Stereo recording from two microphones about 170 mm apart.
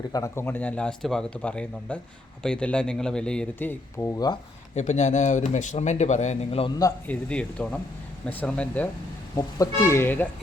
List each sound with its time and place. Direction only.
0.1 s speech: 15° left (ahead or behind)
4.7 s speech: 40° left (ahead or behind)
7.1 s speech: 5° left (ahead or behind)
9.3 s speech: 20° left (ahead or behind)